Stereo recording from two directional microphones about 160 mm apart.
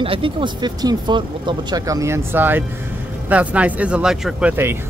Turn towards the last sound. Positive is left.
turn(degrees=-15)  # may be behind; listen again after turning